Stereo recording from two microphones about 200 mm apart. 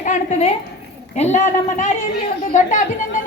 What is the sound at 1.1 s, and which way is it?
Speech, 35° left (ahead or behind).